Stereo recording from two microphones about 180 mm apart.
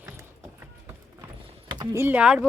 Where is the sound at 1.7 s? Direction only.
15° right (ahead or behind).